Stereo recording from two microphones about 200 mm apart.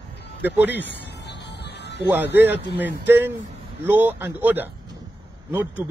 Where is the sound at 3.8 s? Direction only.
10° right (ahead or behind).